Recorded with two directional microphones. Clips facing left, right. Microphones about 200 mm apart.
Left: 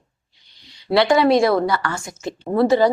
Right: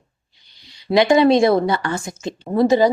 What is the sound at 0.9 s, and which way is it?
Speech, 20° right (ahead or behind).